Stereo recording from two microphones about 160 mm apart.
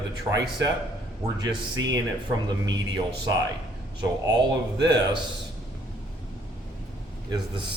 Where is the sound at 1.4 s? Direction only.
25° right (ahead or behind).